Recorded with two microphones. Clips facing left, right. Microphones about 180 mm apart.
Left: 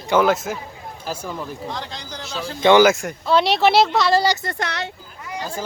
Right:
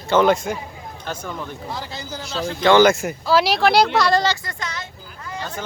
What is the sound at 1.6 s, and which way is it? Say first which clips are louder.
Speech: even; 5° right (ahead or behind).